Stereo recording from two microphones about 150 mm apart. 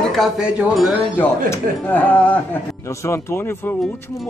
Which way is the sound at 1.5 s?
10° left (ahead or behind).